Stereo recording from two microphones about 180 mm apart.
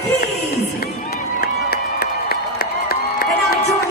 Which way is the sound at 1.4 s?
60° left (ahead or behind).